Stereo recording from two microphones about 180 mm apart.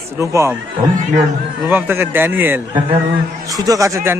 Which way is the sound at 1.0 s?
45° right (ahead or behind).